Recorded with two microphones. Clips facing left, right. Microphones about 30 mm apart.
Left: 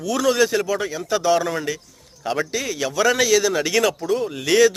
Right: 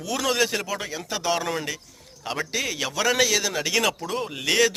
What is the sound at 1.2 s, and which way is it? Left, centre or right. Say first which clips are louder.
Speech: left 5 dB; centre.